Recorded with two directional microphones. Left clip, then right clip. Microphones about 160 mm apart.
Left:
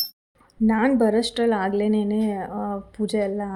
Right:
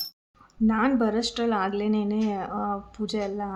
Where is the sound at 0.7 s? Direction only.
20° left (ahead or behind).